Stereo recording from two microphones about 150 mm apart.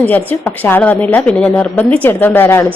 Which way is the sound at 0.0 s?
10° left (ahead or behind).